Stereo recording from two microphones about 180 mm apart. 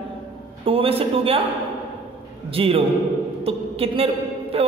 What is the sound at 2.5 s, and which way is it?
A man's voice, 30° right (ahead or behind).